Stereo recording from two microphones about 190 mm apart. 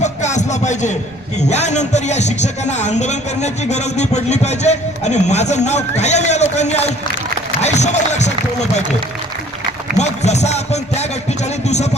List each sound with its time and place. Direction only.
0.0 s music: 40° left (ahead or behind)
1.4 s a man's voice: 35° left (ahead or behind)
10.0 s a man's voice: 35° left (ahead or behind)